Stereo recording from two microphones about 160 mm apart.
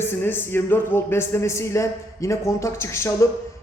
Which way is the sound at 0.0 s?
15° left (ahead or behind).